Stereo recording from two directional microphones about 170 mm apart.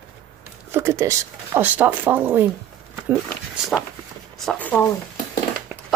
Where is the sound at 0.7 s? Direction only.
15° right (ahead or behind).